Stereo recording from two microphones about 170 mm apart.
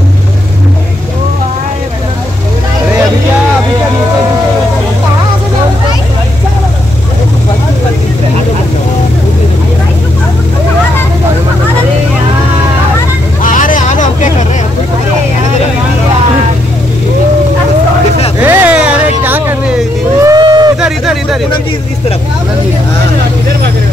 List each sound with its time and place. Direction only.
13.4 s vehicle: 50° left (ahead or behind)
18.4 s vehicle: 10° right (ahead or behind)
20.8 s hubbub: centre (ahead or behind)